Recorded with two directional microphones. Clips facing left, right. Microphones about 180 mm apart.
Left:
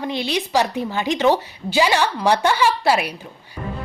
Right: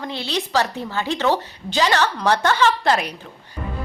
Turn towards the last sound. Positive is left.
turn(degrees=10)  # may be behind; listen again after turning